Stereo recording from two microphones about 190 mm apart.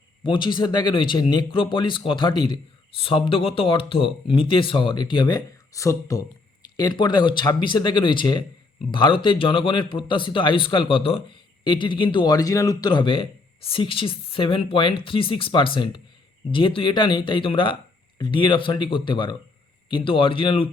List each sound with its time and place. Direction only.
0.2 s speech: 25° left (ahead or behind)